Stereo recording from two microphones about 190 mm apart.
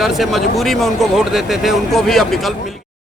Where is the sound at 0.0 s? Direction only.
Centre (ahead or behind).